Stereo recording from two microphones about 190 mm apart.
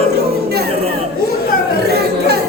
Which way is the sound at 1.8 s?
55° right (ahead or behind).